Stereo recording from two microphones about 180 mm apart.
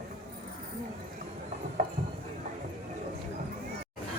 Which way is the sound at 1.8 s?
50° right (ahead or behind).